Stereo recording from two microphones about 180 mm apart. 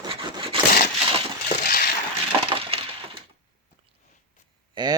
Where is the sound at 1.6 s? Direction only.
55° left (ahead or behind).